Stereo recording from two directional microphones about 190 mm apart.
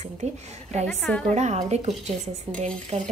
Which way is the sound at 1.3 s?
35° right (ahead or behind).